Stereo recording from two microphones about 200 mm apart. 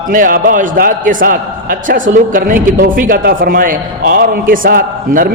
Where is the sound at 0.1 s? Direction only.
45° right (ahead or behind).